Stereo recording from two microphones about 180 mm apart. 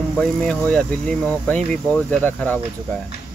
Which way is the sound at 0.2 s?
5° left (ahead or behind).